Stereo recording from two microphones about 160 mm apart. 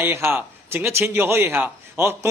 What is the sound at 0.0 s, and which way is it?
A man's voice, 15° right (ahead or behind).